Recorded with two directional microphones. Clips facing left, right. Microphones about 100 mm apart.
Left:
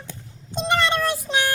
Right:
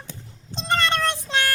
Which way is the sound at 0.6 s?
10° left (ahead or behind).